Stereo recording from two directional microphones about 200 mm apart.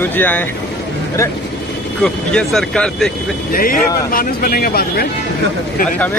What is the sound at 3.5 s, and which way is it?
Speech, 45° left (ahead or behind).